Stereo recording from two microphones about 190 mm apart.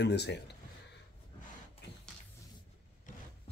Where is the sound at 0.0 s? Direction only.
65° left (ahead or behind).